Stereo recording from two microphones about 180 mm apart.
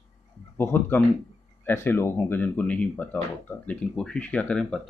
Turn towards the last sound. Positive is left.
turn(degrees=5)  # may be behind; listen again after turning